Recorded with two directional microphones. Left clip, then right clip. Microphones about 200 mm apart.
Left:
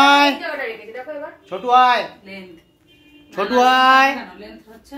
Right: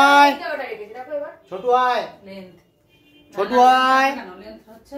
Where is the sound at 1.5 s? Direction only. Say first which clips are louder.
Left 4 dB; 15° left (ahead or behind).